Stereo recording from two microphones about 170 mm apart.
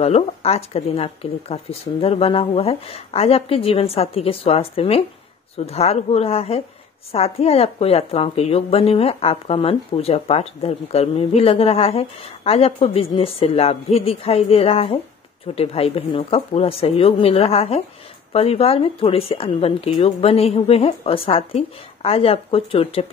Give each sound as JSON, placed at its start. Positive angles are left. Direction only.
{"t": 0.0, "sound": "a woman's voice", "side_deg": 40}